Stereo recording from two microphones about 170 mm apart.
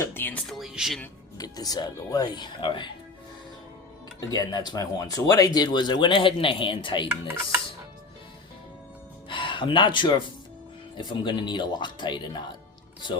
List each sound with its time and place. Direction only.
0.0 s speech: 15° left (ahead or behind)
1.4 s speech: 20° left (ahead or behind)
4.3 s speech: 25° left (ahead or behind)
7.1 s speech: 10° right (ahead or behind)
9.3 s speech: 30° left (ahead or behind)